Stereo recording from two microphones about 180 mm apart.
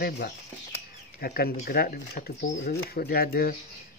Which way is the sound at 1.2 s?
55° left (ahead or behind).